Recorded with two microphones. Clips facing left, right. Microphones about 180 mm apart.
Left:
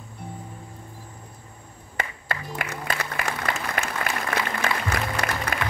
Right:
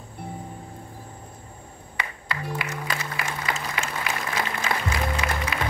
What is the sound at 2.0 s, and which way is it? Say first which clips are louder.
Music: left 2 dB; 50° left (ahead or behind).